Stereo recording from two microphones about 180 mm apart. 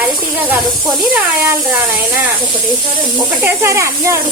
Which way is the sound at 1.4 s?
10° right (ahead or behind).